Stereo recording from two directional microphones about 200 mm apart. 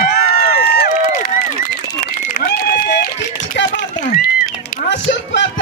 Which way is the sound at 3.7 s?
40° left (ahead or behind).